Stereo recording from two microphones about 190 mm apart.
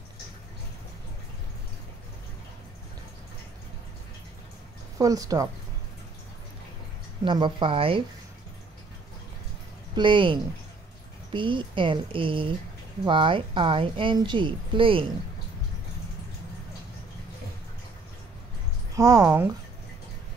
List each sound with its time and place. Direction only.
4.9 s a woman's voice: 20° right (ahead or behind)
7.2 s a woman's voice: 25° right (ahead or behind)
9.9 s a woman's voice: 25° right (ahead or behind)
18.9 s a woman's voice: 20° right (ahead or behind)